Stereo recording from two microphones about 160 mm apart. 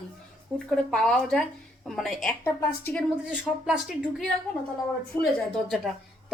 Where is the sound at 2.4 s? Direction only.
15° left (ahead or behind).